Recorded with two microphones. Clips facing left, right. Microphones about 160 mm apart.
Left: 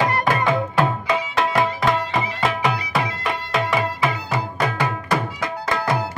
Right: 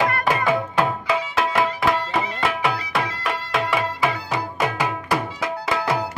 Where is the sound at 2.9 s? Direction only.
Centre (ahead or behind).